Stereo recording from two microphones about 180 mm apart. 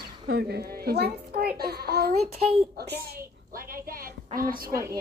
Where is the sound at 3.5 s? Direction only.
55° right (ahead or behind).